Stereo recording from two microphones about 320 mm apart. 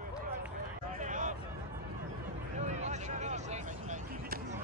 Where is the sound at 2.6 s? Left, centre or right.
Right.